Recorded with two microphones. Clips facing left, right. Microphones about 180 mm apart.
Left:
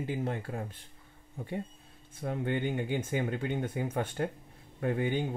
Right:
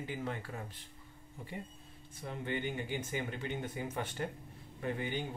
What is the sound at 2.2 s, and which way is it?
Speech, 55° left (ahead or behind).